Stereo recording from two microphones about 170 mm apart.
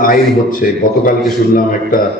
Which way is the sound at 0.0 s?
55° left (ahead or behind).